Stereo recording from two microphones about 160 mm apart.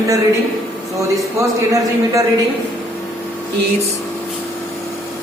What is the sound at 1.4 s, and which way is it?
Speech, 20° right (ahead or behind).